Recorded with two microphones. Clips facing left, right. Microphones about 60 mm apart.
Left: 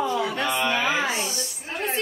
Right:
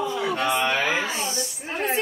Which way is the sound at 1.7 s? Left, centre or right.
Centre.